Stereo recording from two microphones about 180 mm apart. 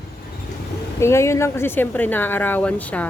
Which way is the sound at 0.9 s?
15° left (ahead or behind).